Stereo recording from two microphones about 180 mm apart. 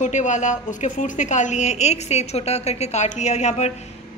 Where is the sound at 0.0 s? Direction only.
40° left (ahead or behind).